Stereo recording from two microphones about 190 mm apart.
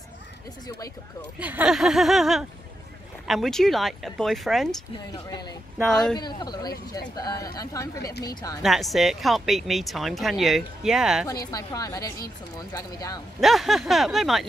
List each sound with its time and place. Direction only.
1.4 s speech: 10° right (ahead or behind)
5.3 s a woman's voice: 20° left (ahead or behind)
8.0 s speech: 55° left (ahead or behind)
8.6 s speech: centre (ahead or behind)
11.2 s a woman's voice: 20° left (ahead or behind)
13.4 s speech: centre (ahead or behind)